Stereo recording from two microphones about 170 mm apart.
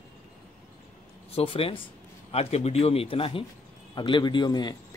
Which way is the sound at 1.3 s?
35° left (ahead or behind).